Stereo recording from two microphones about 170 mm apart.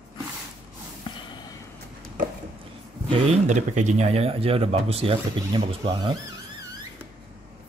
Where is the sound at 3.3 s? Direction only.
45° right (ahead or behind).